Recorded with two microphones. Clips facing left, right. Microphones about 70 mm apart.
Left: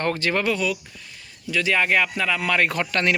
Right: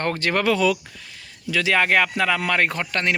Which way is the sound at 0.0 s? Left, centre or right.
Right.